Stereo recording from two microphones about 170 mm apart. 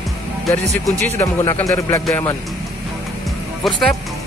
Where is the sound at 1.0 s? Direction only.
15° left (ahead or behind).